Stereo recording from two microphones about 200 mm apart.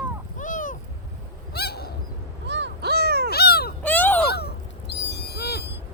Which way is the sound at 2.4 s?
60° right (ahead or behind).